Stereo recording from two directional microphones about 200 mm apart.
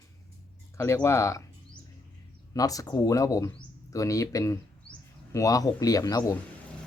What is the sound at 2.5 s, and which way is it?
Speech, 15° left (ahead or behind).